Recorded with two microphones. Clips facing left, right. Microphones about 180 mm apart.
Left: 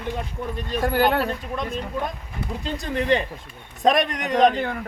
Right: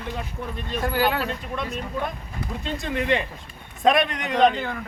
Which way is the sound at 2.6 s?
40° left (ahead or behind).